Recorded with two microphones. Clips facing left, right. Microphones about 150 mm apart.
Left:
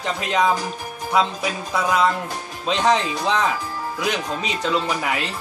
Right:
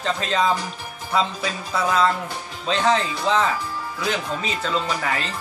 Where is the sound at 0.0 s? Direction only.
15° left (ahead or behind).